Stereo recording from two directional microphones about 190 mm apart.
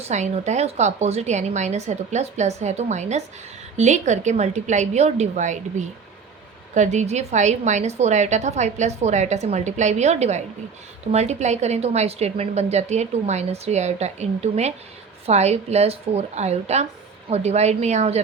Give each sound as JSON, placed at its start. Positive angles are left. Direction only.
{"t": 0.0, "sound": "a woman's voice", "side_deg": -35}
{"t": 6.7, "sound": "a woman's voice", "side_deg": -40}